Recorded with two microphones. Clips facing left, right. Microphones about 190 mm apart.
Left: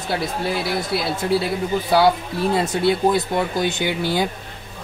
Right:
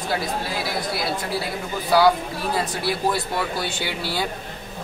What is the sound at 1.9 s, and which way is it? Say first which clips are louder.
Speech: even; 25° left (ahead or behind).